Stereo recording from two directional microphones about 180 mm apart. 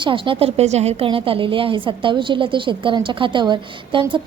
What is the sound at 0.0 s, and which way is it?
A woman's voice, 30° right (ahead or behind).